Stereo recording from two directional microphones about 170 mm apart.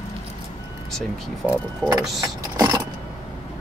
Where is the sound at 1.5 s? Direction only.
20° right (ahead or behind).